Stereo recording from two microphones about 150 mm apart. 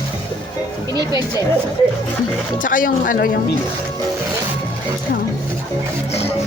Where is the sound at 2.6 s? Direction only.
65° left (ahead or behind).